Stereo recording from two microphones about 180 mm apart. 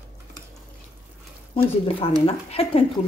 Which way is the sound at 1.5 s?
30° left (ahead or behind).